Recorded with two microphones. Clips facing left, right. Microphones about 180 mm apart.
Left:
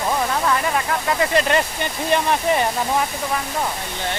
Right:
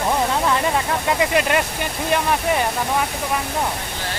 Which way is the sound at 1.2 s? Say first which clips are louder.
Left 1 dB; 10° right (ahead or behind).